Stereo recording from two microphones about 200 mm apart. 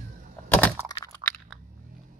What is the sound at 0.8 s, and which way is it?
Crack, 20° left (ahead or behind).